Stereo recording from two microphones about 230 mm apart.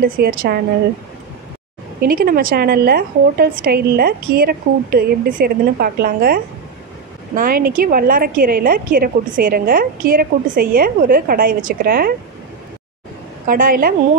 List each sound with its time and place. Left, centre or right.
0.0 s a woman's voice: right
2.0 s a woman's voice: right
13.5 s a woman's voice: right